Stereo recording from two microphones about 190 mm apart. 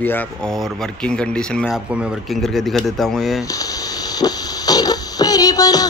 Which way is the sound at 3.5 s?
20° left (ahead or behind).